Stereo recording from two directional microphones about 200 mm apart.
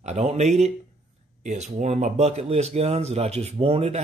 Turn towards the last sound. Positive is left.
turn(degrees=-30)  # may be behind; listen again after turning